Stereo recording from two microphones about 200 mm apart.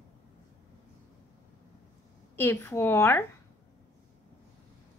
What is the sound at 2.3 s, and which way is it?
Speech, 10° left (ahead or behind).